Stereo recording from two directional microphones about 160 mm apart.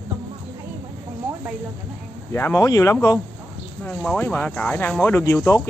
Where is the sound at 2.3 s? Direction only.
15° left (ahead or behind).